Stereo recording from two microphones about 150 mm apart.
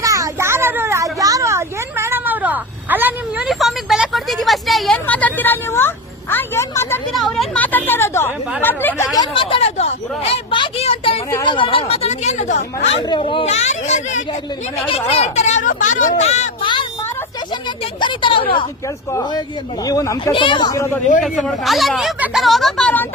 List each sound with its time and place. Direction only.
0.0 s a sound: 20° right (ahead or behind); by 4.9 s centre (ahead or behind)
5.0 s speech: 10° left (ahead or behind)
6.3 s a sound: 15° left (ahead or behind)
7.1 s chatter: centre (ahead or behind)
9.1 s speech: 35° left (ahead or behind)
13.0 s speech: 30° left (ahead or behind); by 16.5 s 50° left (ahead or behind)
18.0 s speech: 35° left (ahead or behind)
19.9 s speech: 20° left (ahead or behind)
20.3 s speech: 35° left (ahead or behind)
21.2 s speech: centre (ahead or behind)